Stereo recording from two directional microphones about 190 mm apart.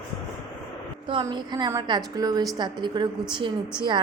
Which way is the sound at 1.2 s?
20° right (ahead or behind).